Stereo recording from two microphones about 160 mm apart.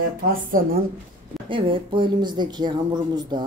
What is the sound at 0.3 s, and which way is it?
Speech, 60° right (ahead or behind).